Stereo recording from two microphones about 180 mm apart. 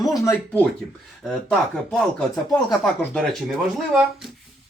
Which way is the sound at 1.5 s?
5° left (ahead or behind).